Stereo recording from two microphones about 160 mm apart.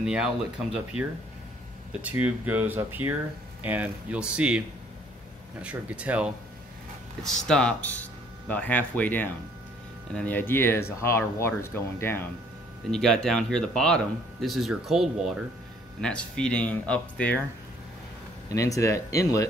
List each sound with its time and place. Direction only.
0.0 s speech: 5° right (ahead or behind)
2.0 s speech: 10° right (ahead or behind)
7.2 s speech: 5° left (ahead or behind)
12.9 s speech: 5° left (ahead or behind)
18.5 s speech: 20° left (ahead or behind)